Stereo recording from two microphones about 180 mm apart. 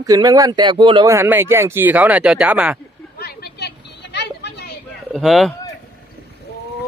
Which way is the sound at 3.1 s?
60° left (ahead or behind).